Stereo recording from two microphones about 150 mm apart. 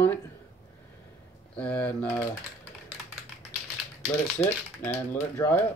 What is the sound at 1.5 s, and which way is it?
Speech, 10° left (ahead or behind).